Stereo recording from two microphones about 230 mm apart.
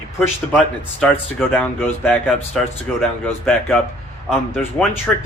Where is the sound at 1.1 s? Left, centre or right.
Centre.